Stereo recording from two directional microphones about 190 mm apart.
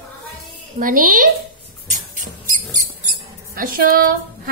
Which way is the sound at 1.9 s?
45° right (ahead or behind).